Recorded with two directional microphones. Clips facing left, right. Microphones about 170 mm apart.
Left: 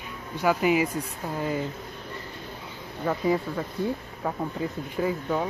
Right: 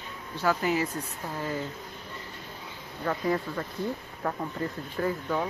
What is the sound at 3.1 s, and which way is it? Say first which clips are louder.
Speech: left 3 dB; 10° left (ahead or behind).